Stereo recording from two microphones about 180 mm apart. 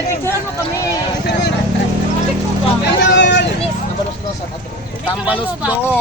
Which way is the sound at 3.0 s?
75° left (ahead or behind).